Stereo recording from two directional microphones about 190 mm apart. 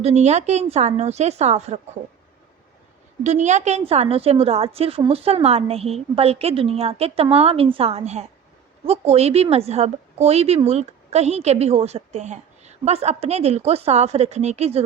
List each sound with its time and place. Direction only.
0.0 s a woman's voice: 35° right (ahead or behind)
3.2 s a woman's voice: 40° right (ahead or behind)